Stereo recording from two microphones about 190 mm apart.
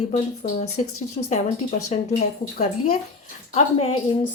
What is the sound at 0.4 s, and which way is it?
A woman's voice, 40° left (ahead or behind).